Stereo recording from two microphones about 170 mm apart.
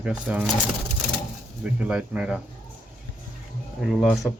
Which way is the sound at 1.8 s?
5° right (ahead or behind).